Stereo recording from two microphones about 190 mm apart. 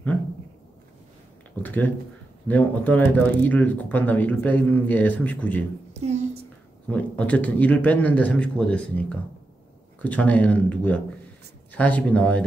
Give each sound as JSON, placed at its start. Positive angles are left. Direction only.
{"t": 1.6, "sound": "speech", "side_deg": 10}
{"t": 5.9, "sound": "a sound", "side_deg": -35}
{"t": 6.9, "sound": "speech", "side_deg": 5}